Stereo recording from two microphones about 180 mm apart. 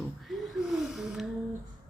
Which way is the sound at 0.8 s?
Centre (ahead or behind).